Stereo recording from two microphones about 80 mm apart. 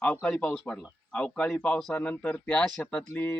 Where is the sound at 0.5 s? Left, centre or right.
Centre.